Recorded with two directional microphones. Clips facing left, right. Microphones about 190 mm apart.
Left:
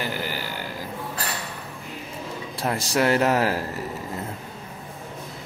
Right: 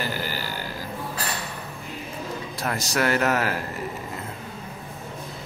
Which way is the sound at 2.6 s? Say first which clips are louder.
Left 3 dB; 30° left (ahead or behind).